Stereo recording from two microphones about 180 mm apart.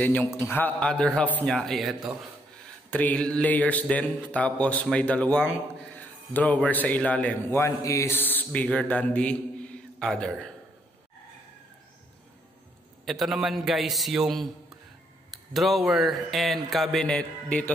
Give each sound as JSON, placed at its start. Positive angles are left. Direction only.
{"t": 0.0, "sound": "a man's voice", "side_deg": 10}
{"t": 2.9, "sound": "speech", "side_deg": 10}
{"t": 13.0, "sound": "a man's voice", "side_deg": 0}